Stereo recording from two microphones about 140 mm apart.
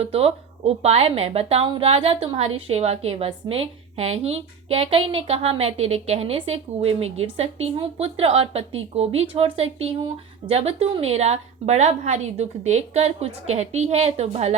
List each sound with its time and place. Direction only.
0.0 s a woman's voice: 45° right (ahead or behind)